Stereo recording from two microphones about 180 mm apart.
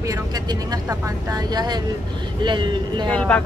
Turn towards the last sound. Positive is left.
turn(degrees=5)  # may be behind; listen again after turning